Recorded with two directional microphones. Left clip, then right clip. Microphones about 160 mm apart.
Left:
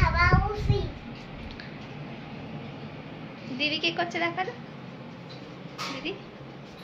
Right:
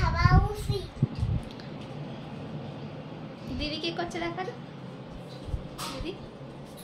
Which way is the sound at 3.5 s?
5° left (ahead or behind).